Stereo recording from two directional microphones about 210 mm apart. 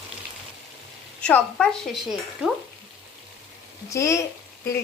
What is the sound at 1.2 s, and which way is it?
Speech, 5° left (ahead or behind).